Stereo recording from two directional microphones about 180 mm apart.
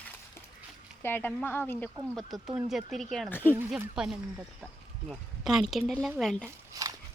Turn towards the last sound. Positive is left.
turn(degrees=-20)  # may be behind; listen again after turning